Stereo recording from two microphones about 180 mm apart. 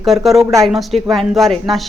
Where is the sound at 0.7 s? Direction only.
Centre (ahead or behind).